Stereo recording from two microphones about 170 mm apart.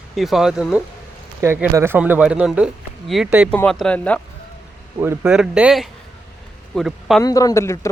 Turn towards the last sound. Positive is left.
turn(degrees=15)  # may be behind; listen again after turning